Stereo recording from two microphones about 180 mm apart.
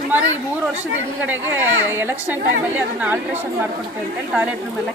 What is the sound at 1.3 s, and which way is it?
Speech, 10° right (ahead or behind).